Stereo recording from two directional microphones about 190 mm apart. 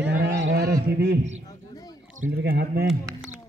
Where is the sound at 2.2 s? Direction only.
55° right (ahead or behind).